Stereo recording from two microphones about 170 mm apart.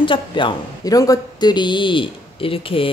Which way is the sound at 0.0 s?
30° left (ahead or behind).